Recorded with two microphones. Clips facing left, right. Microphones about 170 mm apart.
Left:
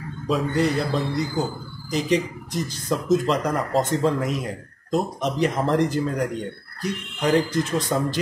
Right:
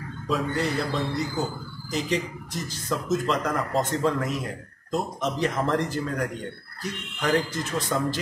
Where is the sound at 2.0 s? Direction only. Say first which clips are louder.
Left 5 dB; 20° left (ahead or behind).